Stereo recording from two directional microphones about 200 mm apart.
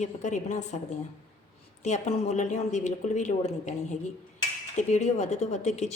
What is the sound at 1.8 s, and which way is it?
Speech, 35° left (ahead or behind).